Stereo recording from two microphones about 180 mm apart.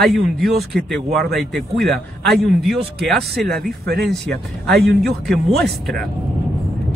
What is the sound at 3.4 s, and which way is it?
Speech, 60° right (ahead or behind).